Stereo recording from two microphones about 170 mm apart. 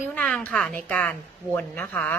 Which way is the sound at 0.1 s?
10° left (ahead or behind).